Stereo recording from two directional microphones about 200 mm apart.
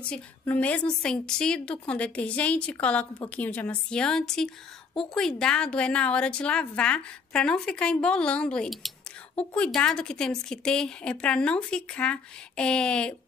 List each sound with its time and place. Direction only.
0.0 s a woman's voice: 5° left (ahead or behind)